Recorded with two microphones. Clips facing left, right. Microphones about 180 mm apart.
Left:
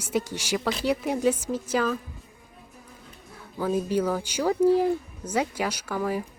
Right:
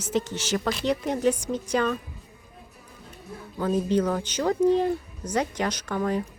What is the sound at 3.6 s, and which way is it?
A woman's voice, 10° left (ahead or behind).